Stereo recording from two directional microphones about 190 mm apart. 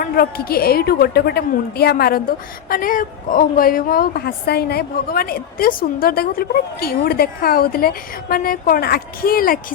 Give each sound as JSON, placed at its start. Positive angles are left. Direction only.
{"t": 0.0, "sound": "a woman's voice", "side_deg": 50}